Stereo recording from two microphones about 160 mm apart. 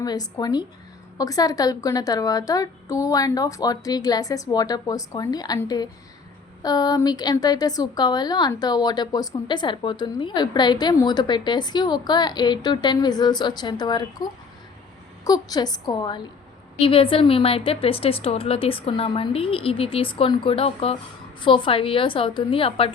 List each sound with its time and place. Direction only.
0.0 s a woman's voice: 25° left (ahead or behind)